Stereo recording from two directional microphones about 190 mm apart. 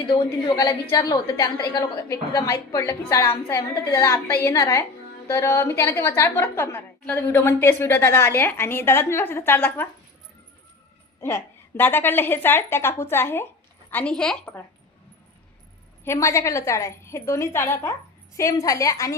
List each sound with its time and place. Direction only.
0.1 s a woman's voice: 20° left (ahead or behind)
11.2 s a woman's voice: 15° left (ahead or behind)
16.0 s a woman's voice: 15° left (ahead or behind)